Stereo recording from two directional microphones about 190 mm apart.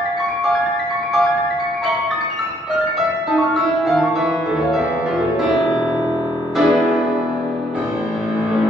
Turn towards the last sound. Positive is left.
turn(degrees=-5)  # may be behind; listen again after turning